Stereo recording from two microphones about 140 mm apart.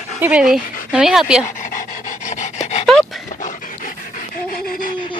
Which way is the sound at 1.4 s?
65° left (ahead or behind).